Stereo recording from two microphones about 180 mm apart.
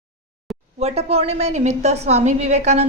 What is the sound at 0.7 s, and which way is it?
A woman's voice, 35° right (ahead or behind).